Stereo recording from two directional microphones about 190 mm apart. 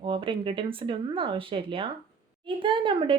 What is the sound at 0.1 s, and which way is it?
A woman's voice, 30° right (ahead or behind).